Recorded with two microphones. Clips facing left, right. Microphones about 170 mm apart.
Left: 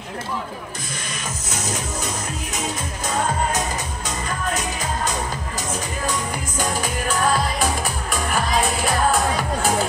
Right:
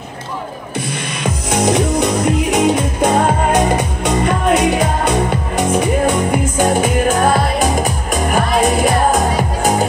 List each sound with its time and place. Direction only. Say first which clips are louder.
1.2 s music: right 16 dB; 70° right (ahead or behind)
7.5 s music: right 7 dB; 45° right (ahead or behind)